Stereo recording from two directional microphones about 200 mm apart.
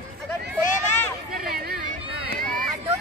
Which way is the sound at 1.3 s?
50° right (ahead or behind).